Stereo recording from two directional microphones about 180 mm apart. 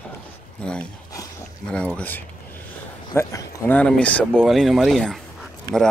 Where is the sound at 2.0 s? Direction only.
10° left (ahead or behind).